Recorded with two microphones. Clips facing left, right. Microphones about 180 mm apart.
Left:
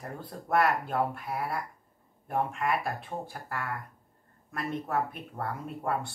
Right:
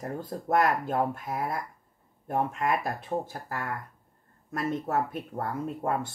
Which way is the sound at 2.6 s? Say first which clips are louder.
Right 2 dB; 40° right (ahead or behind).